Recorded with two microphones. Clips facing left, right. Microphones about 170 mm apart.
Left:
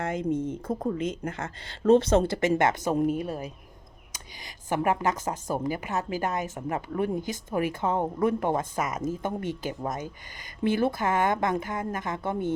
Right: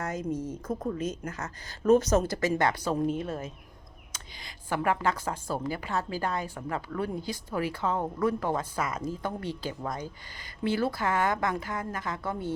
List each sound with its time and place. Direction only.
0.0 s speech: 25° left (ahead or behind)
4.7 s speech: 20° left (ahead or behind)